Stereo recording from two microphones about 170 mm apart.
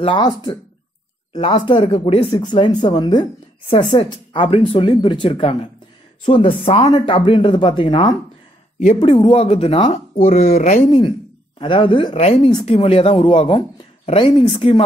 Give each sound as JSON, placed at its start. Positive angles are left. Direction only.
{"t": 0.0, "sound": "speech", "side_deg": 30}
{"t": 1.3, "sound": "speech", "side_deg": 30}
{"t": 10.9, "sound": "speech", "side_deg": 25}